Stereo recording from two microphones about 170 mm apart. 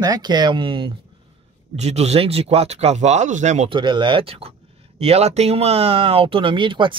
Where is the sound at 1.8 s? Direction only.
40° right (ahead or behind).